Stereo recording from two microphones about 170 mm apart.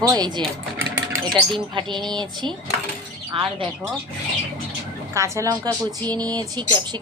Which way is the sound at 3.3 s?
35° right (ahead or behind).